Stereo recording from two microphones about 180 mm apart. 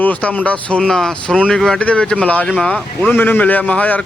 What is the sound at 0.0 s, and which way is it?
Speech, 10° left (ahead or behind).